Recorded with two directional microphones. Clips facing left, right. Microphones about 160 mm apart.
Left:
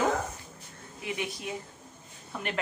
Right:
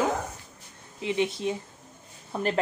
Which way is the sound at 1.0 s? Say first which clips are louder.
Right 8 dB; 25° right (ahead or behind).